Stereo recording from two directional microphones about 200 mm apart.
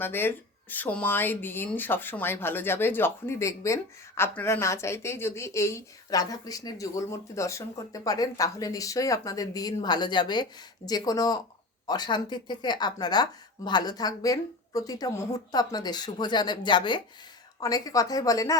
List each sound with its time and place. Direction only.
0.0 s a woman's voice: 10° left (ahead or behind)